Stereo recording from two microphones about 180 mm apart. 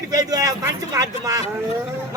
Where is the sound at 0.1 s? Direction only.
20° right (ahead or behind).